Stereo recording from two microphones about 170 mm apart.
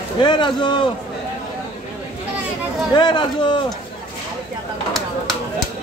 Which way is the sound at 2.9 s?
25° left (ahead or behind).